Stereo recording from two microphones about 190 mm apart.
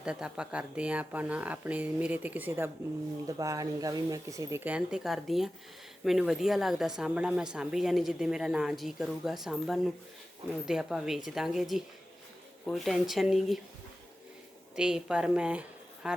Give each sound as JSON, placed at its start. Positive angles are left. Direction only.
{"t": 0.0, "sound": "speech", "side_deg": -5}
{"t": 14.8, "sound": "speech", "side_deg": -5}